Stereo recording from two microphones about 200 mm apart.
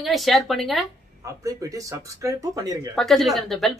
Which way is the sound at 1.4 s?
15° right (ahead or behind).